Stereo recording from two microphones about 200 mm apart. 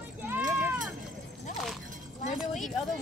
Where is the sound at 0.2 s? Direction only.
5° right (ahead or behind).